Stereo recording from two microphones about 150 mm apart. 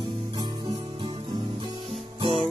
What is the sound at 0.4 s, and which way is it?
Music, 25° right (ahead or behind).